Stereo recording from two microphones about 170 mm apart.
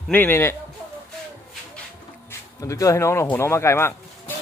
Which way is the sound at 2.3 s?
20° left (ahead or behind).